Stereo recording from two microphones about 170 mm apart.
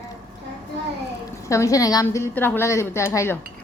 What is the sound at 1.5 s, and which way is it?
A woman's voice, 20° left (ahead or behind).